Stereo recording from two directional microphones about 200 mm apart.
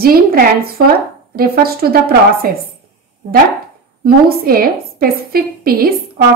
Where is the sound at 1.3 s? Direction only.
50° right (ahead or behind).